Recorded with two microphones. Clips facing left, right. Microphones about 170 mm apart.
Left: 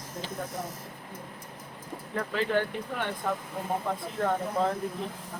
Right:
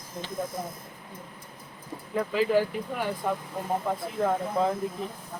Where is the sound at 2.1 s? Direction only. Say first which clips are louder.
Right 4 dB; 5° right (ahead or behind).